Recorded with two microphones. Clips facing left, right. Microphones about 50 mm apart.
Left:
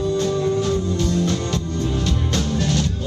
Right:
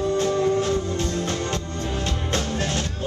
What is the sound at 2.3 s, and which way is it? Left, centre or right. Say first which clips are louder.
Music: left 3 dB; right.